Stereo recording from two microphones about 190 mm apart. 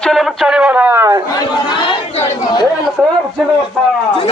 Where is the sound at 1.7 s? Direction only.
25° left (ahead or behind).